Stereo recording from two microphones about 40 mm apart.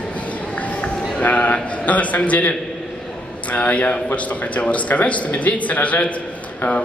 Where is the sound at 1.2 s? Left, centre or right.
Left.